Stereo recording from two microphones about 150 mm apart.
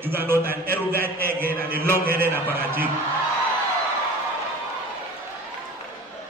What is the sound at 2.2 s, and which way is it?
Speech, 15° right (ahead or behind).